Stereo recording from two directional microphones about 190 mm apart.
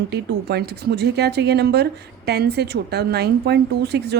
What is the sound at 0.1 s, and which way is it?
Speech, 60° right (ahead or behind).